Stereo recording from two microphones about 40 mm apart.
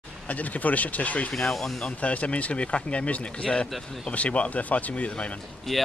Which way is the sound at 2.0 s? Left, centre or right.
Left.